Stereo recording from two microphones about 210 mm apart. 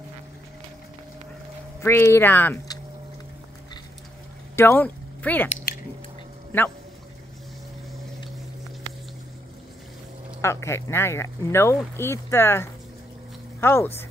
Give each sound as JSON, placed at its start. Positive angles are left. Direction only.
{"t": 1.8, "sound": "speech", "side_deg": 10}
{"t": 4.6, "sound": "speech", "side_deg": 10}
{"t": 10.4, "sound": "speech", "side_deg": 15}